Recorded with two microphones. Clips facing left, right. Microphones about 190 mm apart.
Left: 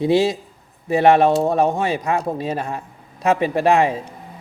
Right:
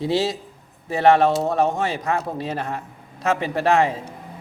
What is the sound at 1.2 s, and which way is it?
Speech, 55° left (ahead or behind).